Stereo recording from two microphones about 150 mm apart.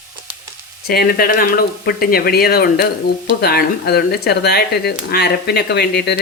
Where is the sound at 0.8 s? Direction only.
90° left.